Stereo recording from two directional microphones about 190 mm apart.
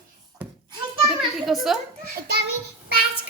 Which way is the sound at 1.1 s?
Centre (ahead or behind).